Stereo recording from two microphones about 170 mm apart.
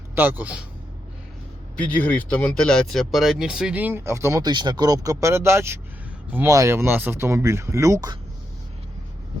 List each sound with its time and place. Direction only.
0.2 s speech: 10° right (ahead or behind)
2.0 s speech: 10° left (ahead or behind); by 8.2 s 20° right (ahead or behind)